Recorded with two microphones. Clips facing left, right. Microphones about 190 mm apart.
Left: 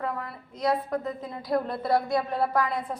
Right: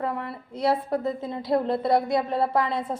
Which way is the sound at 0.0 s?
30° right (ahead or behind).